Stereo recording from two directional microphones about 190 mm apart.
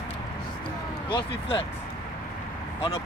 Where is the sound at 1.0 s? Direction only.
25° left (ahead or behind).